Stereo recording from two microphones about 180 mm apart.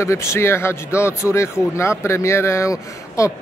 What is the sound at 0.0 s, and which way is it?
Speech, 15° left (ahead or behind).